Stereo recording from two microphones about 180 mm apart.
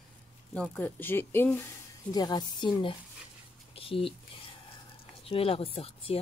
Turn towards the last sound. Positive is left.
turn(degrees=30)  # may be behind; listen again after turning